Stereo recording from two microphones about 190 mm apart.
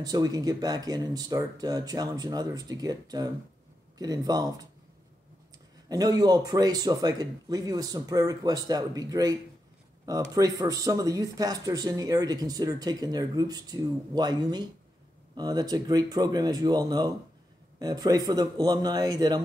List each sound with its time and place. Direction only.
0.0 s speech: 20° right (ahead or behind)
5.9 s speech: 20° right (ahead or behind)